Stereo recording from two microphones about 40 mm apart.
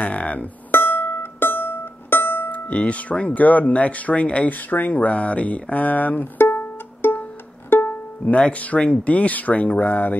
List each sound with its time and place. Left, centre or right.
0.0 s speech: left
0.7 s music: left
2.7 s speech: left
4.5 s speech: left
6.3 s music: left
7.7 s music: left
8.5 s speech: left